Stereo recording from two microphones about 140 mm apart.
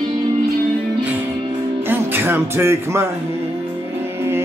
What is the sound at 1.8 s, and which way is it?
Music, 15° right (ahead or behind).